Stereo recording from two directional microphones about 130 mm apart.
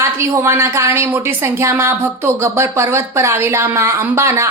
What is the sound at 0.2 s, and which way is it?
A woman's voice, 20° right (ahead or behind).